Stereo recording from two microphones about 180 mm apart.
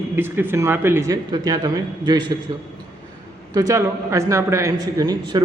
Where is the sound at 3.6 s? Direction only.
15° right (ahead or behind).